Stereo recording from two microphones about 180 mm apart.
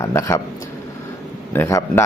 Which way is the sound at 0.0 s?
15° left (ahead or behind).